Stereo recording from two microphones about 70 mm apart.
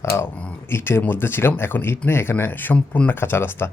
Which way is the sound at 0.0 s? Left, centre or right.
Left.